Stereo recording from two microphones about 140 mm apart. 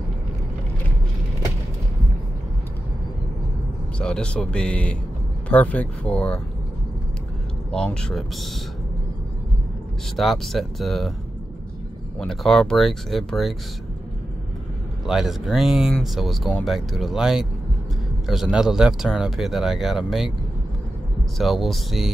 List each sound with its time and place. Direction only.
4.0 s speech: 5° left (ahead or behind)
7.7 s speech: 5° left (ahead or behind)
10.1 s speech: centre (ahead or behind)
12.2 s speech: 5° left (ahead or behind)
15.0 s speech: 5° right (ahead or behind)
21.4 s speech: centre (ahead or behind)